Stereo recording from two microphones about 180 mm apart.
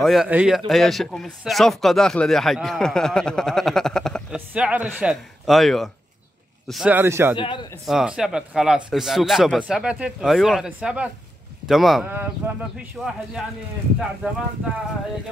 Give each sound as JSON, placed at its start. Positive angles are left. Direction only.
{"t": 0.0, "sound": "speech", "side_deg": 0}
{"t": 7.3, "sound": "a man's voice", "side_deg": 25}
{"t": 7.8, "sound": "speech", "side_deg": -5}